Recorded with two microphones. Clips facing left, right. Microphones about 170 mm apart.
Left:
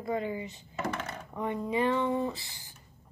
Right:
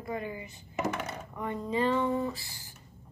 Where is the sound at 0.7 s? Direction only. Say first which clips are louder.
Right 3 dB; 10° right (ahead or behind).